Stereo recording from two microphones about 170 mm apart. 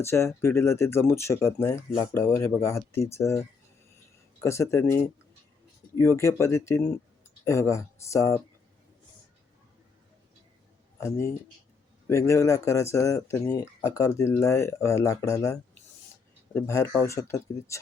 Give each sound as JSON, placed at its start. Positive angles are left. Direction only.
{"t": 0.0, "sound": "speech", "side_deg": 15}
{"t": 4.4, "sound": "speech", "side_deg": 15}
{"t": 6.0, "sound": "speech", "side_deg": 15}
{"t": 12.0, "sound": "speech", "side_deg": 15}
{"t": 16.6, "sound": "speech", "side_deg": 15}